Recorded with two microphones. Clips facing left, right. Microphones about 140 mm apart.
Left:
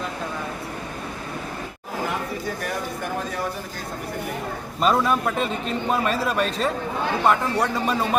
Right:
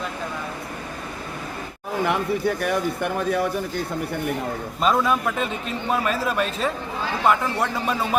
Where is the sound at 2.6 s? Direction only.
70° right (ahead or behind).